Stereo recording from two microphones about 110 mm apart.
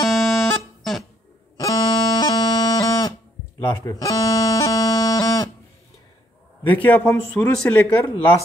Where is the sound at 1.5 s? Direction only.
35° left (ahead or behind).